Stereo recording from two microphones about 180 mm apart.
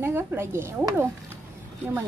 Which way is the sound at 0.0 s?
10° right (ahead or behind).